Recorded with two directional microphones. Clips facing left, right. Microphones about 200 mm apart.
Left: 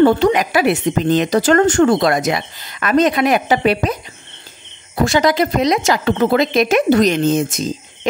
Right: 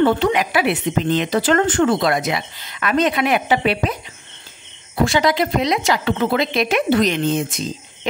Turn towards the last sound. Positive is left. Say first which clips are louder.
# left 4 dB
turn(degrees=45)  # may be behind; listen again after turning